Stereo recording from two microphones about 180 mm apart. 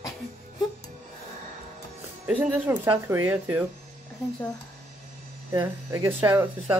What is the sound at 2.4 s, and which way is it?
Speech, 10° right (ahead or behind).